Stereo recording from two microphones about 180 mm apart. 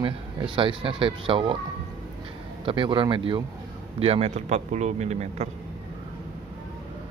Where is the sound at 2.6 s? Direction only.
25° right (ahead or behind).